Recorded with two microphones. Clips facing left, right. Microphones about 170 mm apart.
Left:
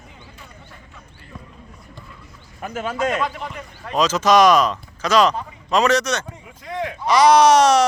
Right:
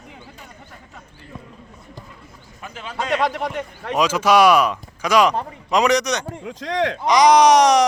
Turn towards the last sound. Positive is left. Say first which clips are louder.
# even
turn(degrees=-15)  # may be behind; listen again after turning